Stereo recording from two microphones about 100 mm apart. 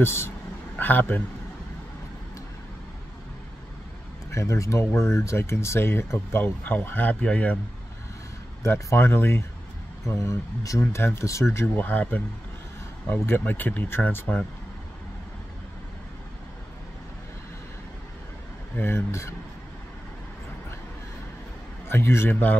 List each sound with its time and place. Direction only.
0.0 s speech: 25° left (ahead or behind)
4.3 s speech: 30° left (ahead or behind); by 7.5 s 15° left (ahead or behind)
8.6 s speech: 25° left (ahead or behind)
11.7 s speech: 15° left (ahead or behind)
18.8 s speech: 25° left (ahead or behind)
21.8 s speech: 25° left (ahead or behind)